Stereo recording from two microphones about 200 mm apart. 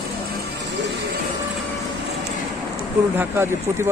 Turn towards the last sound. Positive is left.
turn(degrees=-10)  # may be behind; listen again after turning